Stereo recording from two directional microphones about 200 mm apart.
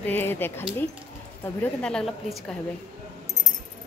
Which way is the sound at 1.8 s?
5° left (ahead or behind).